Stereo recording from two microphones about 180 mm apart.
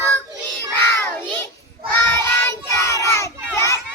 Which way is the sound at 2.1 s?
15° left (ahead or behind).